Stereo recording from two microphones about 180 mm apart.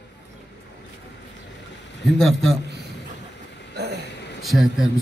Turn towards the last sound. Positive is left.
turn(degrees=0)  # may be behind; listen again after turning